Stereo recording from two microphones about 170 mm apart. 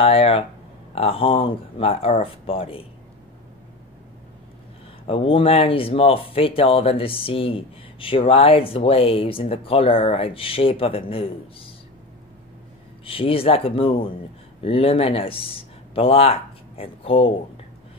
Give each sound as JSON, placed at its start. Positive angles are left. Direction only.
{"t": 0.0, "sound": "speech", "side_deg": 35}
{"t": 5.0, "sound": "speech", "side_deg": 35}
{"t": 13.0, "sound": "speech", "side_deg": 35}